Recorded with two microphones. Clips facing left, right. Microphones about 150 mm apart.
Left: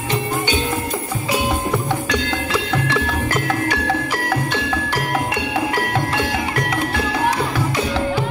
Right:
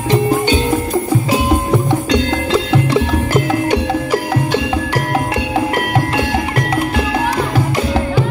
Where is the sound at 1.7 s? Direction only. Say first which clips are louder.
Right 6 dB; 25° right (ahead or behind).